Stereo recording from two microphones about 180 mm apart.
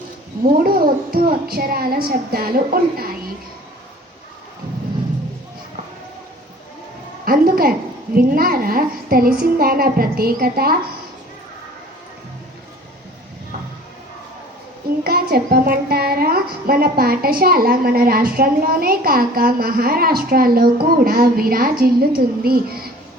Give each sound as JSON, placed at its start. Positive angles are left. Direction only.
{"t": 0.6, "sound": "a woman's voice", "side_deg": -55}
{"t": 7.3, "sound": "a woman's voice", "side_deg": -55}
{"t": 15.0, "sound": "a woman's voice", "side_deg": -55}